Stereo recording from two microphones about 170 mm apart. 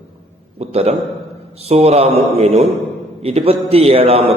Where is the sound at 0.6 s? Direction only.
35° right (ahead or behind).